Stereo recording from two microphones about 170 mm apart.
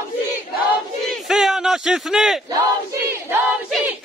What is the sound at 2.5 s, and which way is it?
Choir, 15° right (ahead or behind).